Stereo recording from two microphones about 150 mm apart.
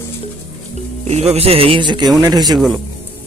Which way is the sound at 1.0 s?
45° right (ahead or behind).